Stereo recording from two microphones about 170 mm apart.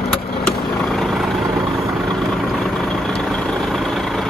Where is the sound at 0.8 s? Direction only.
Centre (ahead or behind).